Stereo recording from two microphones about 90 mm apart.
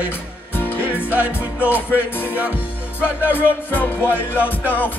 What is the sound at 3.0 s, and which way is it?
Music, 25° left (ahead or behind).